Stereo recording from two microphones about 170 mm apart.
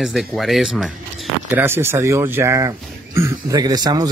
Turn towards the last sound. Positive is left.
turn(degrees=-25)  # may be behind; listen again after turning